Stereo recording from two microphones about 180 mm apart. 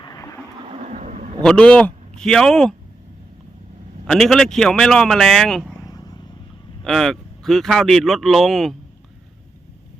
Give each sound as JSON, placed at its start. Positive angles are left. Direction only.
{"t": 0.0, "sound": "vehicle", "side_deg": 20}
{"t": 0.7, "sound": "vehicle", "side_deg": -40}
{"t": 1.4, "sound": "a man's voice", "side_deg": 5}
{"t": 4.0, "sound": "a man's voice", "side_deg": 0}
{"t": 5.8, "sound": "vehicle", "side_deg": 20}
{"t": 6.8, "sound": "a man's voice", "side_deg": 0}